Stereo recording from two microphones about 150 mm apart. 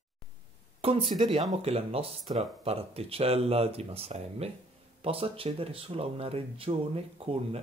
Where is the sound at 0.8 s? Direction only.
40° right (ahead or behind).